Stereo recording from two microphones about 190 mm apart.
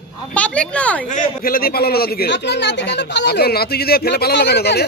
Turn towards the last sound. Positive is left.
turn(degrees=60)  # may be behind; listen again after turning